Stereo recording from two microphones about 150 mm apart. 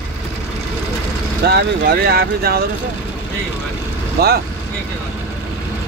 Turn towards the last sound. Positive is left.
turn(degrees=-90)